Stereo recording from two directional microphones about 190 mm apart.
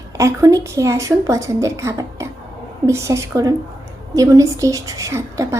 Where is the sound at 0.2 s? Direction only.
15° right (ahead or behind).